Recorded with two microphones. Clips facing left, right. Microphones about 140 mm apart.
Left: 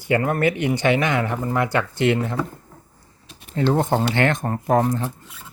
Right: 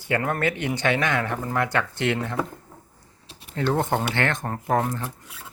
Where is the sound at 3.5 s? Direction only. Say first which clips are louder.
Left 4 dB; 15° left (ahead or behind).